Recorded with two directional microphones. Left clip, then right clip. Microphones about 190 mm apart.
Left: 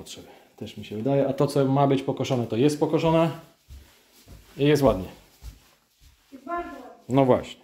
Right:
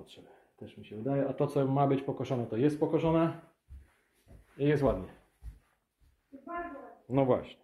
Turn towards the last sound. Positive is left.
turn(degrees=20)  # may be behind; listen again after turning